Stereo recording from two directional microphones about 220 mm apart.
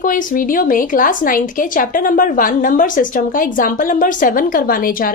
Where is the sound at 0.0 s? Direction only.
40° left (ahead or behind).